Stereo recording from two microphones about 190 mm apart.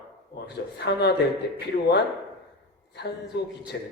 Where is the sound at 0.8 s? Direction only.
60° left (ahead or behind).